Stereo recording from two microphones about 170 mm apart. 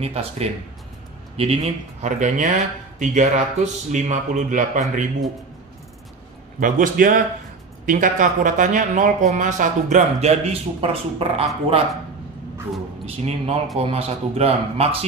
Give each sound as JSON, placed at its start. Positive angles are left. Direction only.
{"t": 0.0, "sound": "speech", "side_deg": -35}
{"t": 6.6, "sound": "speech", "side_deg": -50}
{"t": 10.4, "sound": "speech", "side_deg": -35}
{"t": 13.0, "sound": "speech", "side_deg": -35}